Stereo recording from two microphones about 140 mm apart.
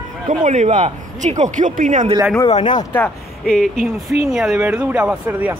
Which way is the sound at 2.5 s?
35° left (ahead or behind).